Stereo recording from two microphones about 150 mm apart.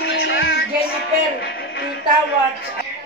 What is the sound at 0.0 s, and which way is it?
Music, 90° left.